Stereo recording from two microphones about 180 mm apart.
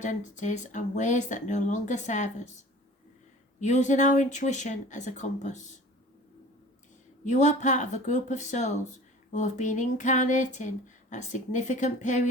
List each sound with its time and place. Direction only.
0.0 s speech: 45° left (ahead or behind)
7.3 s speech: 40° left (ahead or behind)